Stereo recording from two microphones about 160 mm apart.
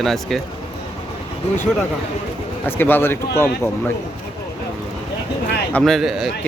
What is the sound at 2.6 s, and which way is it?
Speech, 15° left (ahead or behind).